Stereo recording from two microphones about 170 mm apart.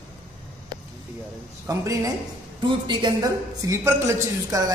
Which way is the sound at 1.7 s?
20° right (ahead or behind).